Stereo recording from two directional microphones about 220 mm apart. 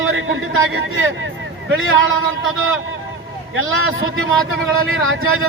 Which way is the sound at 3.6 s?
70° right (ahead or behind).